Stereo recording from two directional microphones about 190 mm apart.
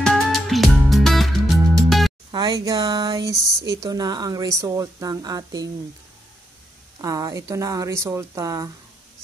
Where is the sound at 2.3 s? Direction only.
20° right (ahead or behind).